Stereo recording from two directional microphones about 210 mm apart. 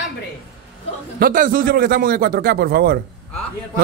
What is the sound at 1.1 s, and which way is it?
A man's voice, 40° right (ahead or behind).